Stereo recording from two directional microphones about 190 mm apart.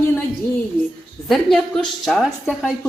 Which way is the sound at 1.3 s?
Centre (ahead or behind).